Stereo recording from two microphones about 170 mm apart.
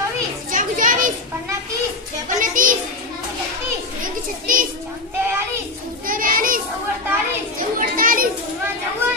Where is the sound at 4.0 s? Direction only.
55° right (ahead or behind).